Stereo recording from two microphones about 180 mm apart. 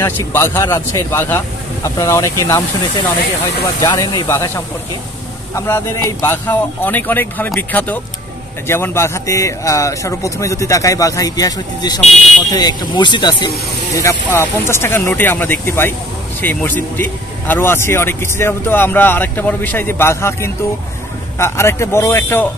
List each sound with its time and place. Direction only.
0.0 s speech: 10° left (ahead or behind)
13.9 s speech: 15° left (ahead or behind)